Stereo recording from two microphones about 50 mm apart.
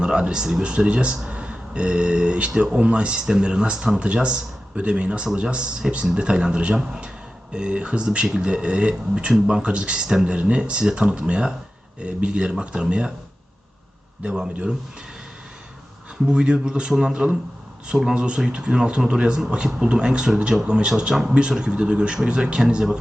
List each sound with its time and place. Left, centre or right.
0.0 s speech: centre
14.3 s speech: right
16.3 s speech: centre